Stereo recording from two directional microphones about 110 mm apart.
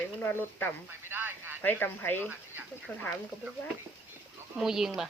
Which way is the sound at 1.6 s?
20° left (ahead or behind).